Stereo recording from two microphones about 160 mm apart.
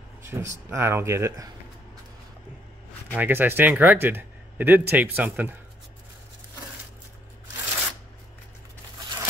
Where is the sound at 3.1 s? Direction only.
10° right (ahead or behind).